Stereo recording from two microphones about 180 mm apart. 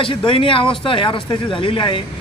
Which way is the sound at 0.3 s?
30° left (ahead or behind).